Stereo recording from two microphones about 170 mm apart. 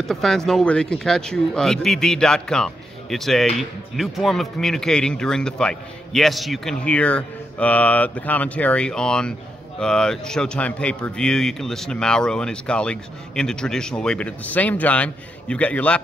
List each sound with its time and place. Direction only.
0.0 s speech: centre (ahead or behind)